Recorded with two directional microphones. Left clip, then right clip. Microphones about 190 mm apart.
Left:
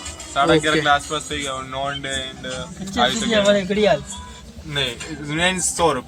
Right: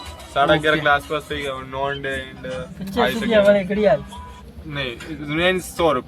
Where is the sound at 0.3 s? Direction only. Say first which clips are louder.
Even; 35° right (ahead or behind).